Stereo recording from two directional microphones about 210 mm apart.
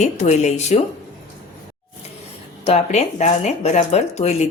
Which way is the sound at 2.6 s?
30° left (ahead or behind).